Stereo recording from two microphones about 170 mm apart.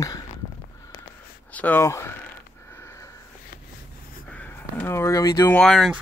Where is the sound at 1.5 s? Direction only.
10° left (ahead or behind).